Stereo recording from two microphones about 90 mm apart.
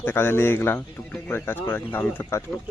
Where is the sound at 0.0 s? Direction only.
25° left (ahead or behind).